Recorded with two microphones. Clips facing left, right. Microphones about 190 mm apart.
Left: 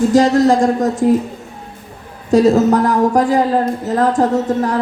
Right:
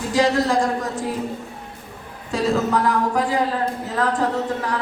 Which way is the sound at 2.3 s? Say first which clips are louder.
Left 10 dB; 40° left (ahead or behind).